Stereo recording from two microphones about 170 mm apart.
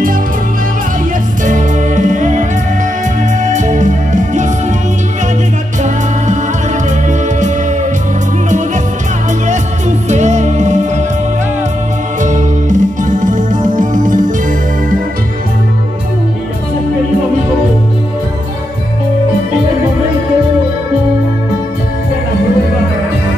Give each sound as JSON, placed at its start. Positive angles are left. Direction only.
{"t": 1.4, "sound": "music", "side_deg": -50}
{"t": 3.5, "sound": "music", "side_deg": -45}
{"t": 7.1, "sound": "music", "side_deg": -45}
{"t": 9.5, "sound": "music", "side_deg": -45}
{"t": 12.2, "sound": "music", "side_deg": -45}